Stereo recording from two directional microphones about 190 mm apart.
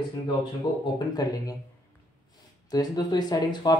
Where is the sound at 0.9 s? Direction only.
20° left (ahead or behind).